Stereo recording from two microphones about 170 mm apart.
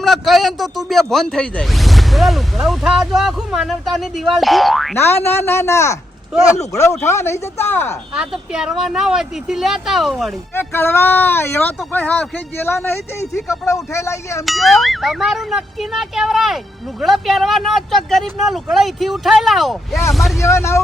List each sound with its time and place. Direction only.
0.0 s speech: centre (ahead or behind)
4.9 s speech: 15° left (ahead or behind)
7.0 s speech: 15° left (ahead or behind)
8.1 s speech: 5° right (ahead or behind)
10.5 s speech: 15° left (ahead or behind)
14.4 s speech: centre (ahead or behind)
20.4 s speech: 15° left (ahead or behind)